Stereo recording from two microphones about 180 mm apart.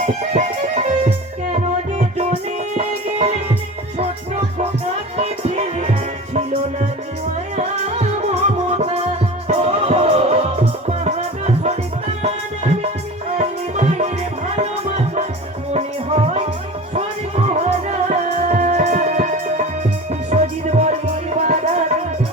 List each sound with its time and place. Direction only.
0.0 s music: 40° right (ahead or behind)
5.1 s music: 35° right (ahead or behind)
13.7 s music: 40° right (ahead or behind)